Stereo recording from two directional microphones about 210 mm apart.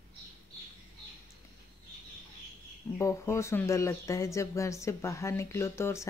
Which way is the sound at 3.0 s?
15° left (ahead or behind).